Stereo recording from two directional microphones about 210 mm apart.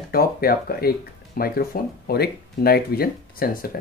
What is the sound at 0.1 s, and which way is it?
Speech, 45° left (ahead or behind).